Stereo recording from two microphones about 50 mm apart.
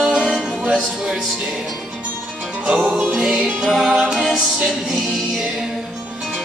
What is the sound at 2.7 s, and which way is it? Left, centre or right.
Music, right.